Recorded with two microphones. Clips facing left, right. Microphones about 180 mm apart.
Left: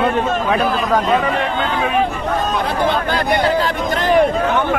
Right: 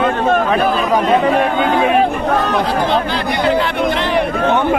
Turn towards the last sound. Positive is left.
turn(degrees=45)  # may be behind; listen again after turning